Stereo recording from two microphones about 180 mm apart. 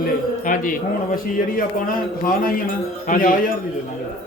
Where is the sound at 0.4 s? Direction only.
50° left (ahead or behind).